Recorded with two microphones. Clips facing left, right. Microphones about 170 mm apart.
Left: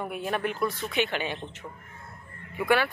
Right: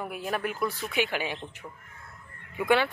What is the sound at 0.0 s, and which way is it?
Speech, centre (ahead or behind).